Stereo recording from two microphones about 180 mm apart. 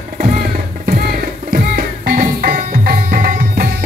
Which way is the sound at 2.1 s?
50° right (ahead or behind).